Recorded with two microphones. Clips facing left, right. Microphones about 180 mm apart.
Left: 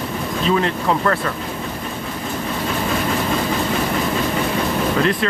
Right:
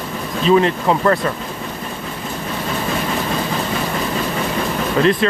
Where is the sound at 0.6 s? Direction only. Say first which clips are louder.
Right 4 dB; 20° right (ahead or behind).